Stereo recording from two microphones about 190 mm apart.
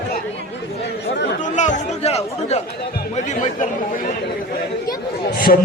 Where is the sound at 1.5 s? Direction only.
40° left (ahead or behind).